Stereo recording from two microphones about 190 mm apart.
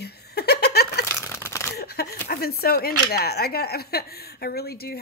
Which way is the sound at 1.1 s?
15° left (ahead or behind).